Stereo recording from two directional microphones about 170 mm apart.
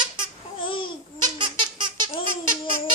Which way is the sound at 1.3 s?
25° right (ahead or behind).